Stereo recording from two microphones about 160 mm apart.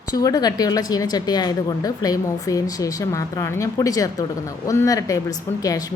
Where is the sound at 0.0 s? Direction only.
25° left (ahead or behind).